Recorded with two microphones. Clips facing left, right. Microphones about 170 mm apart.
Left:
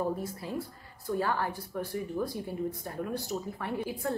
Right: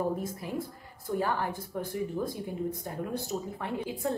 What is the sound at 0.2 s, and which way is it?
A woman's voice, 20° right (ahead or behind).